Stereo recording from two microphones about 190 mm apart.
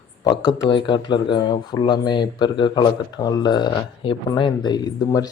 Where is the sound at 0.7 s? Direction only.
25° left (ahead or behind).